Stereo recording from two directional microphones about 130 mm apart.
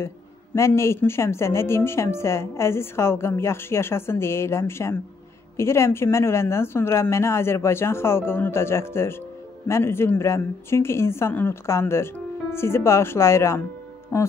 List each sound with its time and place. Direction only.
0.6 s a woman's voice: 20° left (ahead or behind)